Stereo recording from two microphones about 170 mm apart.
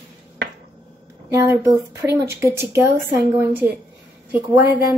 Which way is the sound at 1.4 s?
15° right (ahead or behind).